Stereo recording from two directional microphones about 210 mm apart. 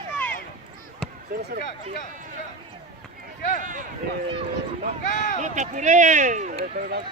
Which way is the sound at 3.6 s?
35° right (ahead or behind).